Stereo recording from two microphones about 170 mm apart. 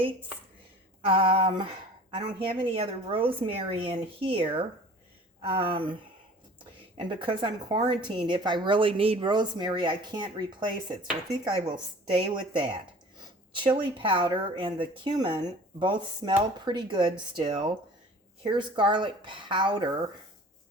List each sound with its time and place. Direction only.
1.0 s a woman's voice: 30° right (ahead or behind)